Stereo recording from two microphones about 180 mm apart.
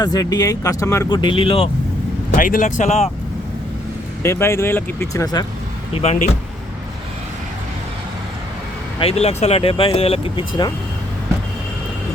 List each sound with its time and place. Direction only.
0.0 s speech: 20° left (ahead or behind)
1.2 s speech: 30° left (ahead or behind)
2.4 s speech: 45° left (ahead or behind)
4.2 s speech: 15° left (ahead or behind)
5.9 s speech: 35° left (ahead or behind)
9.0 s speech: 35° left (ahead or behind)